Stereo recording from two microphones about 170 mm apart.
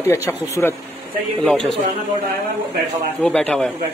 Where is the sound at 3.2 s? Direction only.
5° left (ahead or behind).